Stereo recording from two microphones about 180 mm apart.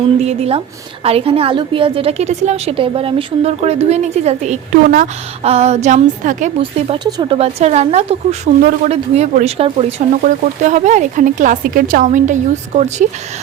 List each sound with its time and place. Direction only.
0.2 s a woman's voice: 35° right (ahead or behind)
6.6 s a woman's voice: 30° right (ahead or behind)
10.2 s speech: 45° right (ahead or behind)